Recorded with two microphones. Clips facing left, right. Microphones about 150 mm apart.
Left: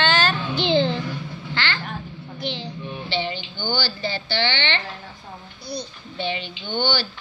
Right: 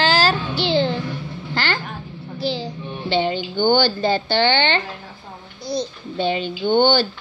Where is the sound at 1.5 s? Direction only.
45° right (ahead or behind).